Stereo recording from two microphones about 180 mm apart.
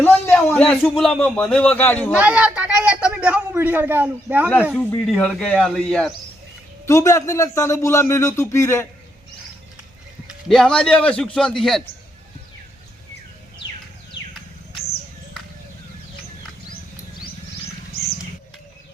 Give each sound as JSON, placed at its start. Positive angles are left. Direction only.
{"t": 0.0, "sound": "speech", "side_deg": 10}
{"t": 2.1, "sound": "a man's voice", "side_deg": -5}
{"t": 6.8, "sound": "speech", "side_deg": 15}
{"t": 10.2, "sound": "a man's voice", "side_deg": 0}